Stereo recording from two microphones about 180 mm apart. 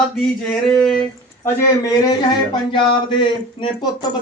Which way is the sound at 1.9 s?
20° left (ahead or behind).